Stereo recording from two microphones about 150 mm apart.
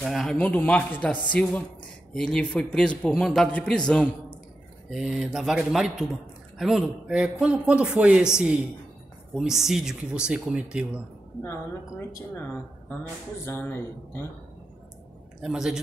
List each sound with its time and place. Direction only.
0.0 s speech: centre (ahead or behind)
11.4 s speech: 20° left (ahead or behind)
13.5 s speech: 15° left (ahead or behind)
15.4 s speech: 5° right (ahead or behind)